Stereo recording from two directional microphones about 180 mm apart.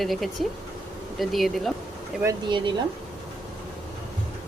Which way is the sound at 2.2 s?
25° right (ahead or behind).